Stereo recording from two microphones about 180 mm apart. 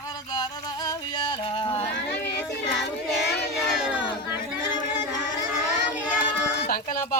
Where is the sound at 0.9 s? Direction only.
25° left (ahead or behind).